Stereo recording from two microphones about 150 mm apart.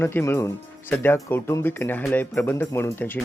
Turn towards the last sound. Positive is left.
turn(degrees=15)  # may be behind; listen again after turning